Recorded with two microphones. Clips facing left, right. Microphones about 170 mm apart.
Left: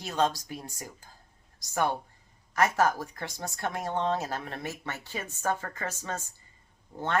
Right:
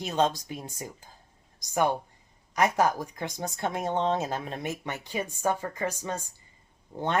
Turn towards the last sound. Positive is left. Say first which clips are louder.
# right 3 dB
turn(degrees=-15)  # may be behind; listen again after turning